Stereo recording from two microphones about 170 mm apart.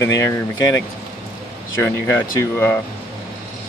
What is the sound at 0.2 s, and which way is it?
Speech, 15° left (ahead or behind).